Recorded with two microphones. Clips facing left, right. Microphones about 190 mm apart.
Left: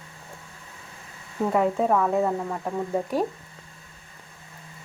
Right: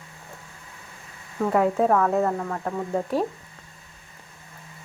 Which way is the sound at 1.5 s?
Centre (ahead or behind).